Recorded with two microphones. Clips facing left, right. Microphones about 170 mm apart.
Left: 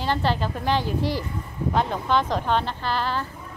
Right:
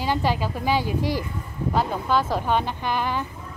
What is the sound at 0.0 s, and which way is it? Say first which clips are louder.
Speech: right 1 dB; 10° right (ahead or behind).